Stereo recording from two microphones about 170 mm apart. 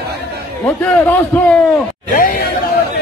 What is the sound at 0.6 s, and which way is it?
Speech, 10° left (ahead or behind).